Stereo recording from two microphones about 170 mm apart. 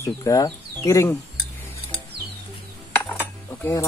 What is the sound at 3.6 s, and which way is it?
Speech, 15° left (ahead or behind).